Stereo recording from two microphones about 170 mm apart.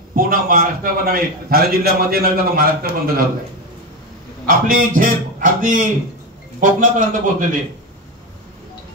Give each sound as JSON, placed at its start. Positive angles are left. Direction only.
{"t": 0.1, "sound": "a man's voice", "side_deg": -55}
{"t": 4.5, "sound": "a man's voice", "side_deg": -55}